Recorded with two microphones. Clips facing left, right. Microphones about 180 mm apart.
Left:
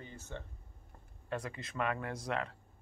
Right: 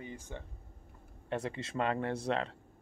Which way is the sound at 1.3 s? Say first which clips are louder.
Right 4 dB; 25° right (ahead or behind).